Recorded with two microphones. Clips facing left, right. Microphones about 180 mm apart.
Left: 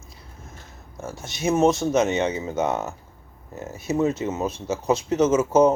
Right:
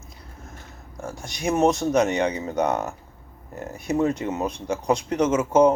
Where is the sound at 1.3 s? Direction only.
20° left (ahead or behind).